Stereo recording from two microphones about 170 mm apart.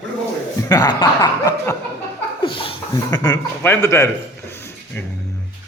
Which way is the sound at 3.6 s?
15° left (ahead or behind).